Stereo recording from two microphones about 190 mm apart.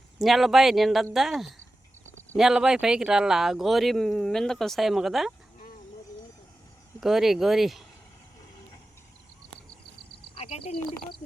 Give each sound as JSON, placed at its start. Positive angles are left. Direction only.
{"t": 0.2, "sound": "speech", "side_deg": 0}
{"t": 7.0, "sound": "speech", "side_deg": 0}
{"t": 10.3, "sound": "a sound", "side_deg": 30}